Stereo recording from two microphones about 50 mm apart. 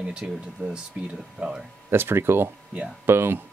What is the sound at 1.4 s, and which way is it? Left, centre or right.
Speech, centre.